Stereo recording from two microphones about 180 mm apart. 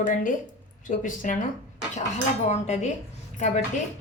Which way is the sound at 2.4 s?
40° left (ahead or behind).